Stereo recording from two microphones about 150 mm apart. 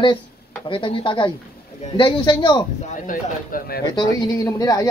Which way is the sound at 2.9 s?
65° left (ahead or behind).